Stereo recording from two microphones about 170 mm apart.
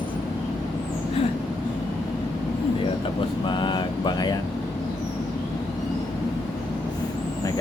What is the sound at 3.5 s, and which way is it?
Vehicle, 25° left (ahead or behind).